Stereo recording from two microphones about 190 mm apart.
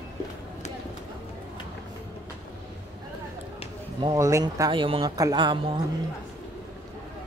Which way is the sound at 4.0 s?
20° right (ahead or behind).